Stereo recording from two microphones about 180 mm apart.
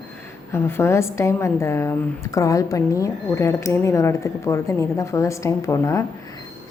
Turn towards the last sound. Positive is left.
turn(degrees=15)  # may be behind; listen again after turning